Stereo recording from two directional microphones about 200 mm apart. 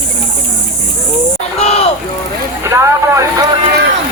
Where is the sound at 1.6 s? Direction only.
30° left (ahead or behind).